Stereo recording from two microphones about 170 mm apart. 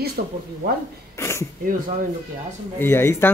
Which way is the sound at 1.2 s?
15° left (ahead or behind).